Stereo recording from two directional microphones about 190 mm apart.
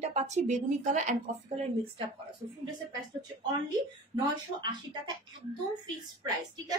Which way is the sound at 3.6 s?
20° right (ahead or behind).